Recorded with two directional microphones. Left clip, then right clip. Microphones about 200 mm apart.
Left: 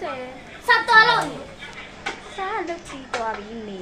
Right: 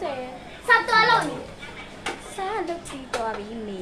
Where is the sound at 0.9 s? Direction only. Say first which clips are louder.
Left 8 dB; 40° left (ahead or behind).